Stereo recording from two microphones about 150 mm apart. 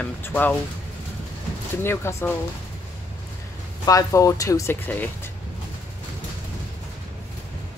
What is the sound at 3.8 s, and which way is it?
Speech, 20° left (ahead or behind).